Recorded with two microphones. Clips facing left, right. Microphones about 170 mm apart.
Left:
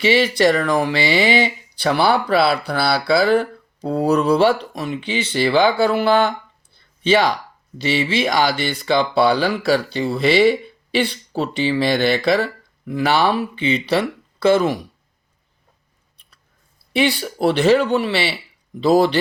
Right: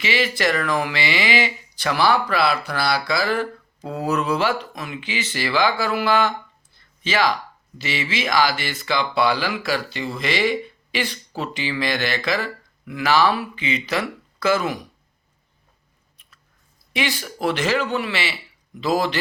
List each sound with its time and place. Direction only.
0.0 s speech: 30° left (ahead or behind)
16.9 s speech: 35° left (ahead or behind)